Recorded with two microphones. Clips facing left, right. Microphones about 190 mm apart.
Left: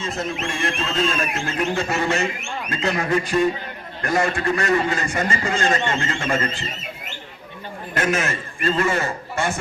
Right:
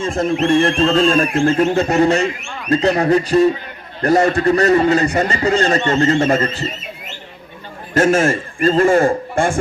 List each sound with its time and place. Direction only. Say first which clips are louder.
0.3 s a man's voice: right 12 dB; 35° right (ahead or behind)
7.9 s a man's voice: right 9 dB; 45° right (ahead or behind)